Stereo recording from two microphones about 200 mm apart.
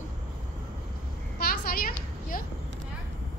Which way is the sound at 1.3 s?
50° left (ahead or behind).